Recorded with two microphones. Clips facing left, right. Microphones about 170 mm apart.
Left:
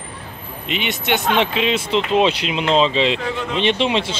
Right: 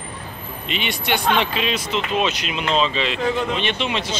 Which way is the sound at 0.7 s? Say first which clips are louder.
Left 2 dB; 15° left (ahead or behind).